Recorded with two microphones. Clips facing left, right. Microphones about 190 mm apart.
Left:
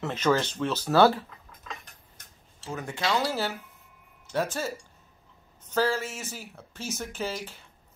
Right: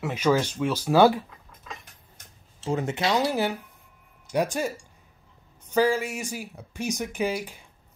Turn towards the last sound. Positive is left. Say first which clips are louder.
# right 6 dB
turn(degrees=-15)  # may be behind; listen again after turning